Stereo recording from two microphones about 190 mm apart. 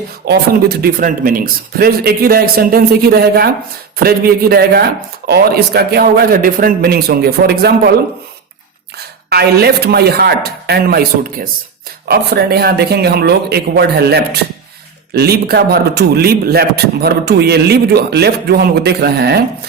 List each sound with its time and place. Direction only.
0.2 s a man's voice: 55° right (ahead or behind)
9.3 s a man's voice: 55° right (ahead or behind)